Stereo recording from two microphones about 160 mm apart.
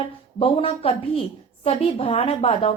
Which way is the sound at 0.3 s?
35° left (ahead or behind).